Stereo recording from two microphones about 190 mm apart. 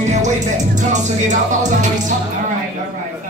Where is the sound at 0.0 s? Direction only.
40° right (ahead or behind).